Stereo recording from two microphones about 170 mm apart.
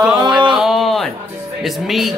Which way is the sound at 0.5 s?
Centre (ahead or behind).